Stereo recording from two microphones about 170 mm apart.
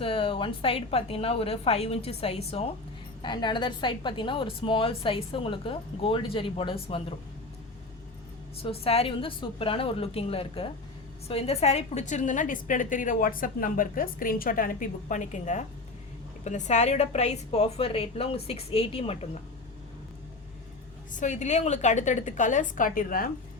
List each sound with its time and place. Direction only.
0.0 s a woman's voice: 30° left (ahead or behind)
8.6 s a woman's voice: 35° left (ahead or behind)
21.1 s a woman's voice: 45° left (ahead or behind)